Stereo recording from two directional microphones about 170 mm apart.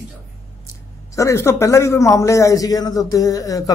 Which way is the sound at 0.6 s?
20° left (ahead or behind).